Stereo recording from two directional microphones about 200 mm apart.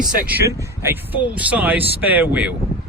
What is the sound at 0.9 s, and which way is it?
Speech, 10° right (ahead or behind).